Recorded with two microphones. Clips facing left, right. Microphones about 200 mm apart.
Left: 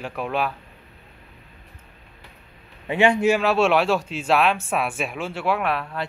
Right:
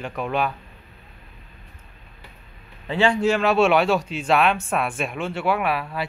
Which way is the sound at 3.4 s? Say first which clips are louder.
Right 1 dB; centre (ahead or behind).